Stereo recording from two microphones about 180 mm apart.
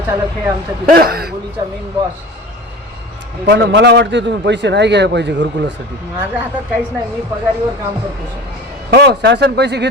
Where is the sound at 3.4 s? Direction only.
75° right (ahead or behind).